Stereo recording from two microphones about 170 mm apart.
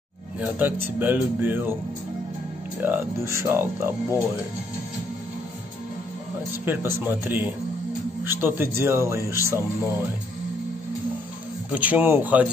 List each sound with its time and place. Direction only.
0.6 s speech: 10° right (ahead or behind)
2.8 s speech: 15° right (ahead or behind)
6.6 s speech: 15° right (ahead or behind)
11.7 s speech: 10° right (ahead or behind)